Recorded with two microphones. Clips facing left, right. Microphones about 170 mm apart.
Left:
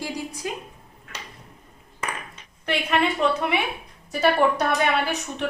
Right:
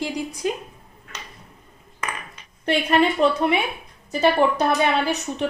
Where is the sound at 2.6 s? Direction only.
35° right (ahead or behind).